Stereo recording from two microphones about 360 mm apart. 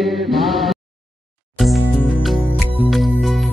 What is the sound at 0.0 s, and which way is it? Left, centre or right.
Chant, centre.